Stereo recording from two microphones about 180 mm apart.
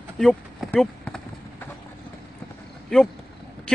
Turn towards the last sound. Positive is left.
turn(degrees=5)  # may be behind; listen again after turning